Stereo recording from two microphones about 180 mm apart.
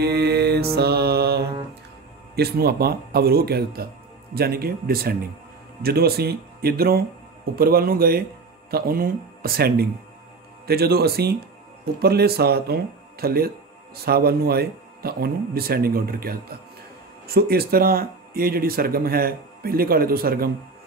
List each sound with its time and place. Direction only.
0.0 s mantra: 65° right (ahead or behind)
2.3 s speech: 60° right (ahead or behind)